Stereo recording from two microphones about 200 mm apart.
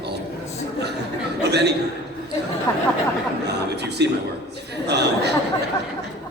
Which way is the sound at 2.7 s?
15° left (ahead or behind).